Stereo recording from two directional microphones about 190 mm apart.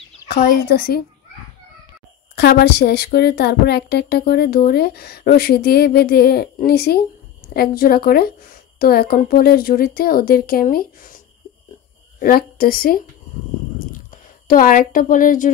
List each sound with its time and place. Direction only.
0.3 s a woman's voice: 55° left (ahead or behind)
2.3 s a woman's voice: 60° left (ahead or behind)
12.2 s a woman's voice: 50° left (ahead or behind)
14.5 s a woman's voice: 45° left (ahead or behind)